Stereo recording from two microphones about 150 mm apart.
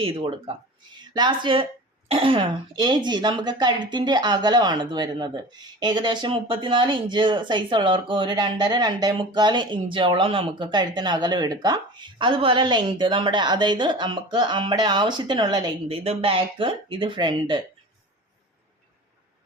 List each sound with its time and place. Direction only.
0.0 s speech: 35° right (ahead or behind)